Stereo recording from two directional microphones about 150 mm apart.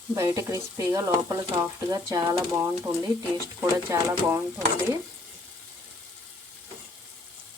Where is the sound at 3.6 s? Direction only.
15° right (ahead or behind).